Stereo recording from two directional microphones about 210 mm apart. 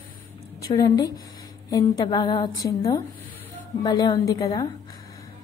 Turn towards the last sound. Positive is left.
turn(degrees=15)  # may be behind; listen again after turning